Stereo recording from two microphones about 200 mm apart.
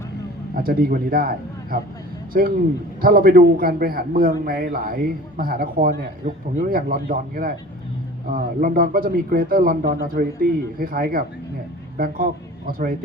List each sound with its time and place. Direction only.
0.5 s a man's voice: 50° right (ahead or behind)